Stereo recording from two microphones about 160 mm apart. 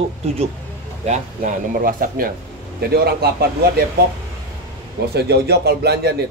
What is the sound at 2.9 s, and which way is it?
Speech, 75° right (ahead or behind).